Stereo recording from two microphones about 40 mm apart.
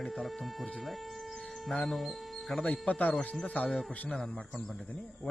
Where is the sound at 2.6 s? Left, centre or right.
Left.